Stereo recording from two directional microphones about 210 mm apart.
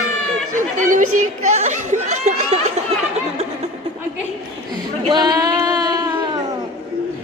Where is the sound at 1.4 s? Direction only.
35° right (ahead or behind).